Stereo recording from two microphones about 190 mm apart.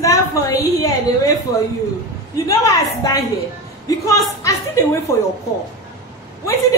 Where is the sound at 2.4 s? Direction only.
15° left (ahead or behind).